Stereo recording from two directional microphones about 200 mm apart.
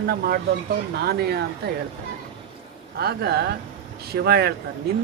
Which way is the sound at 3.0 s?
55° right (ahead or behind).